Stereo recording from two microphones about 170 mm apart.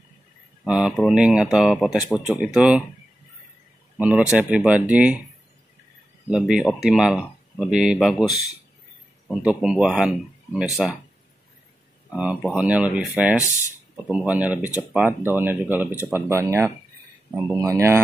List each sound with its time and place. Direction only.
0.7 s speech: 5° right (ahead or behind)
4.0 s speech: 10° right (ahead or behind)
6.3 s speech: centre (ahead or behind)
9.4 s speech: 5° right (ahead or behind)
12.1 s speech: 5° right (ahead or behind)